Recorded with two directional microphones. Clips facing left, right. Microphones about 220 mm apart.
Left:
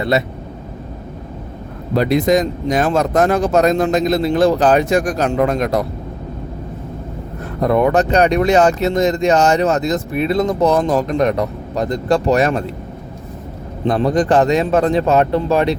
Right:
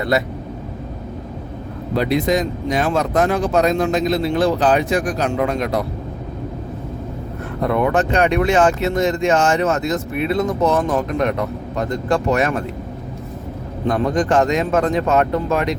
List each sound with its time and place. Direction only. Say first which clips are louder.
0.1 s speech: left 1 dB; 25° left (ahead or behind)
2.0 s speech: left 4 dB; 45° left (ahead or behind)
7.6 s speech: left 4 dB; 40° left (ahead or behind)
13.8 s speech: left 3 dB; 35° left (ahead or behind)